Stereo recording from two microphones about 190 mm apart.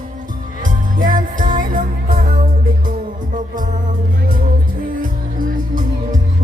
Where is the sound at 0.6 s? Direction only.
45° right (ahead or behind).